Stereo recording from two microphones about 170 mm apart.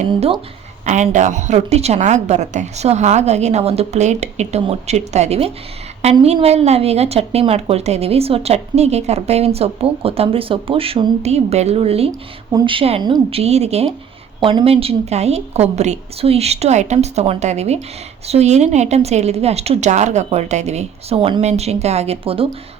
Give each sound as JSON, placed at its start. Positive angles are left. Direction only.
{"t": 0.1, "sound": "a woman's voice", "side_deg": -30}
{"t": 0.9, "sound": "a woman's voice", "side_deg": -45}
{"t": 12.5, "sound": "a woman's voice", "side_deg": -25}